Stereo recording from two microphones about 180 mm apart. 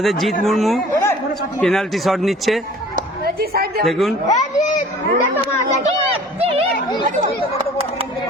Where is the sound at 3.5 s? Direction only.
55° right (ahead or behind).